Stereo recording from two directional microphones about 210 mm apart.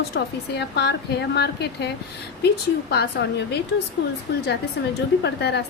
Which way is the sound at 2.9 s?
55° left (ahead or behind).